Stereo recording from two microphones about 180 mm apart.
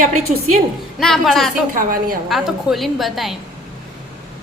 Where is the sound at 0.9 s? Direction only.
Centre (ahead or behind).